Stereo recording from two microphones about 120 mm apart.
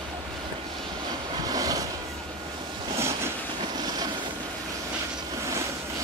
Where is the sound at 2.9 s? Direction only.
20° right (ahead or behind).